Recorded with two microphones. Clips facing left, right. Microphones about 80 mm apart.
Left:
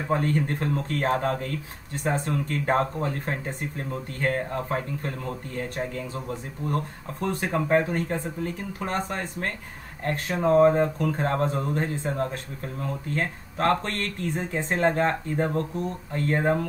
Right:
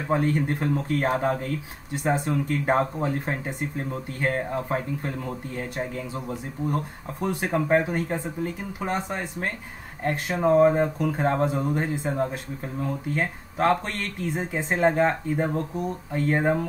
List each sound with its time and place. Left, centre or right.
0.1 s speech: centre